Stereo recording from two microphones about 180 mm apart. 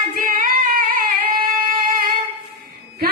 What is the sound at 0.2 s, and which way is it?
Singing, 50° right (ahead or behind).